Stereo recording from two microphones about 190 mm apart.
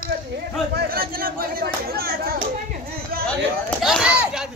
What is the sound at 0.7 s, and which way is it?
Speech, 50° right (ahead or behind).